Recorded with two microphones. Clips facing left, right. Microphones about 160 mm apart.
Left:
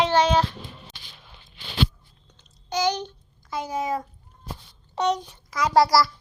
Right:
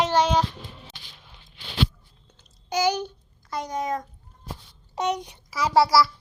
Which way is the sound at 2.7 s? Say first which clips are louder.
Right 1 dB; 10° right (ahead or behind).